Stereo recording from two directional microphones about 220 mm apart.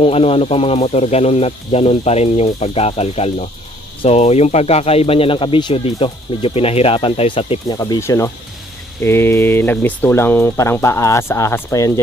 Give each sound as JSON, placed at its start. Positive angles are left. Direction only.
{"t": 0.0, "sound": "speech", "side_deg": 25}